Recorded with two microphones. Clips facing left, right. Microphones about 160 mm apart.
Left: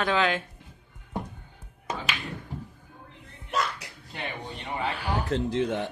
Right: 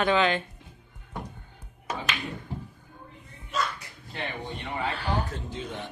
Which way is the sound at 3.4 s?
70° left (ahead or behind).